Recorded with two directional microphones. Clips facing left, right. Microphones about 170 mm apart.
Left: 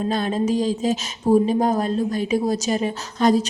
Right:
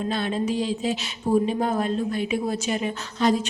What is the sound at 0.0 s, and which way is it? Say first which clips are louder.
Speech: left 4 dB; 40° left (ahead or behind).